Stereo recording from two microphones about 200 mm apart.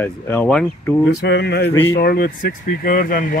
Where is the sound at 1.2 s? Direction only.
55° left (ahead or behind).